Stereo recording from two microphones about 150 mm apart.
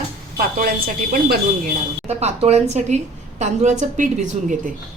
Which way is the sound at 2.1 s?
45° right (ahead or behind).